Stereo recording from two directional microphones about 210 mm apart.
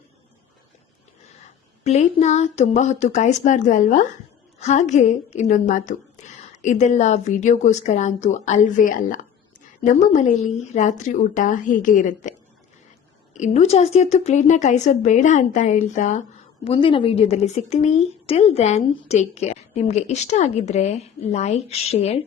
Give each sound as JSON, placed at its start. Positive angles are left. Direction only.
{"t": 1.8, "sound": "a woman's voice", "side_deg": 30}
{"t": 13.3, "sound": "a woman's voice", "side_deg": 35}
{"t": 16.6, "sound": "a woman's voice", "side_deg": 25}